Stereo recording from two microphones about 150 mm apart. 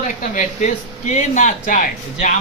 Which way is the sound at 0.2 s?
50° left (ahead or behind).